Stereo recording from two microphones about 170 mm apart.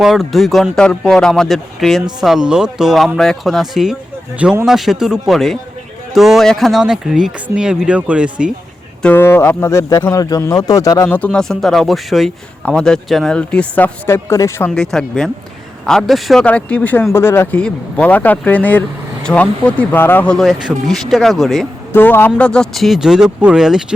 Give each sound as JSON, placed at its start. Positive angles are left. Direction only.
{"t": 0.0, "sound": "speech", "side_deg": 0}
{"t": 9.0, "sound": "speech", "side_deg": 10}
{"t": 14.8, "sound": "speech", "side_deg": 5}
{"t": 21.9, "sound": "speech", "side_deg": 10}